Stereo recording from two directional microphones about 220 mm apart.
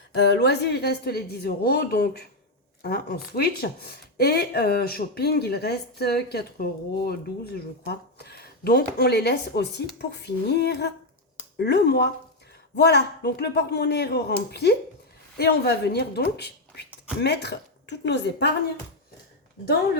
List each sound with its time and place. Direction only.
0.2 s speech: 50° left (ahead or behind)